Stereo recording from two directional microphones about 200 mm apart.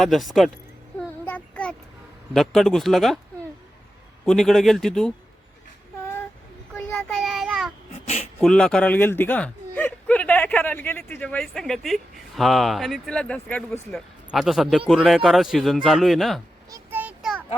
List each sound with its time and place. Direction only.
0.0 s speech: centre (ahead or behind)
0.9 s child singing: 5° left (ahead or behind)
2.3 s speech: centre (ahead or behind)
4.3 s speech: centre (ahead or behind)
6.9 s child singing: centre (ahead or behind)
7.9 s a sound: 30° left (ahead or behind)
8.4 s speech: 5° left (ahead or behind)
16.6 s a sound: 15° right (ahead or behind)